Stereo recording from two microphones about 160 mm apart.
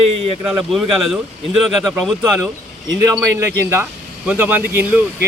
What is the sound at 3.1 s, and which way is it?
Speech, 15° right (ahead or behind).